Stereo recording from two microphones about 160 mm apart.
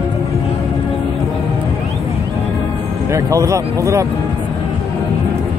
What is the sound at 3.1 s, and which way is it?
Speech, 20° right (ahead or behind).